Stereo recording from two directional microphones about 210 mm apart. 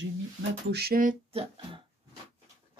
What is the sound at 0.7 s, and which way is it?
Speech, 50° right (ahead or behind).